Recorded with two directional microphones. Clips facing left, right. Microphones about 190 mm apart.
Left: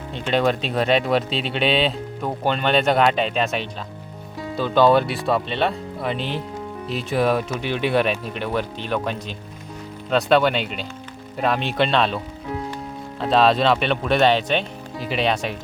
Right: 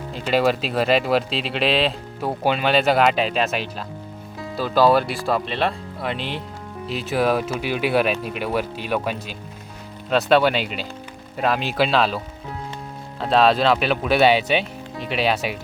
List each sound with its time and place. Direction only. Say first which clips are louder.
0.1 s speech: right 1 dB; 5° right (ahead or behind)